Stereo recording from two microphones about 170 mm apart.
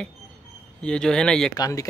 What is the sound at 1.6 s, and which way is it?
Speech, 20° left (ahead or behind).